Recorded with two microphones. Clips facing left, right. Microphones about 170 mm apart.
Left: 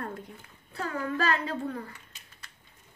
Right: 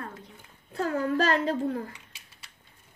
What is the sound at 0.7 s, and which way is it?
Child singing, 40° right (ahead or behind).